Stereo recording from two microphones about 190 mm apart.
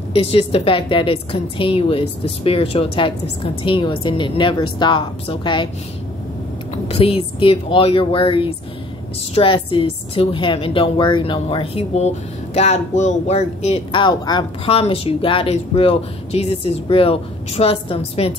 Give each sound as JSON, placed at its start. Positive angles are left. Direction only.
{"t": 0.1, "sound": "a woman's voice", "side_deg": 30}
{"t": 6.7, "sound": "a woman's voice", "side_deg": 30}